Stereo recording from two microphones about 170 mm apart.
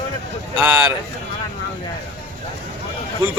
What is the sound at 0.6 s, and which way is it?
Speech, 5° right (ahead or behind).